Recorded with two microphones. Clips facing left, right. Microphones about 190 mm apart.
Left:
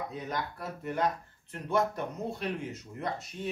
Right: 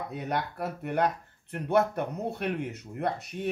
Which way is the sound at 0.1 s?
65° right (ahead or behind).